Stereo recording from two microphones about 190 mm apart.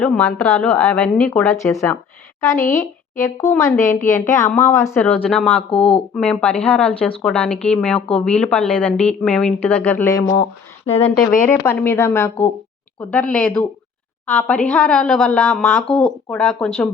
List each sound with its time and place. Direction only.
0.0 s a woman's voice: 5° left (ahead or behind)
1.3 s a woman's voice: 15° left (ahead or behind)
10.8 s speech: 30° left (ahead or behind)
11.2 s a woman's voice: 10° left (ahead or behind)